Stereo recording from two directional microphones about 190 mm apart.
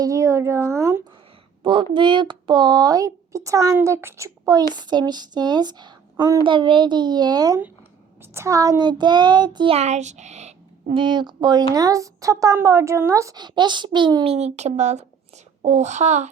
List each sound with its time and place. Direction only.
0.0 s a woman's voice: 15° right (ahead or behind)
14.3 s speech: 35° right (ahead or behind)